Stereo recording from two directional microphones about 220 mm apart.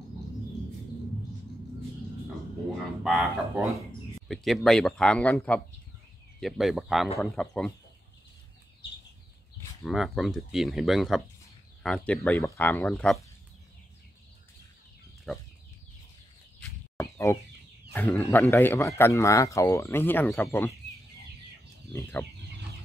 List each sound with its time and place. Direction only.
3.0 s speech: centre (ahead or behind)
9.8 s speech: centre (ahead or behind)
15.3 s speech: centre (ahead or behind)
16.9 s chicken: 15° left (ahead or behind)
17.9 s speech: 10° left (ahead or behind)